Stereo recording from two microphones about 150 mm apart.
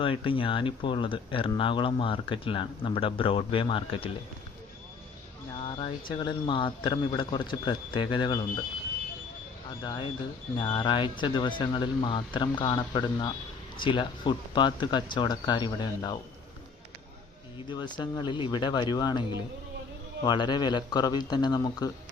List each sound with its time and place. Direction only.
0.0 s speech: 35° left (ahead or behind)
5.5 s speech: 30° left (ahead or behind)
9.8 s speech: 30° left (ahead or behind)
17.7 s speech: 30° left (ahead or behind)
20.2 s speech: 30° left (ahead or behind)